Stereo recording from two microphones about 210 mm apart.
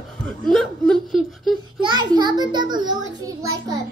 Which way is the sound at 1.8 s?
20° right (ahead or behind).